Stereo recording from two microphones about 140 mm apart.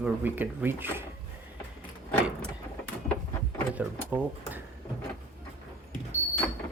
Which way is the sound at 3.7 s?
10° right (ahead or behind).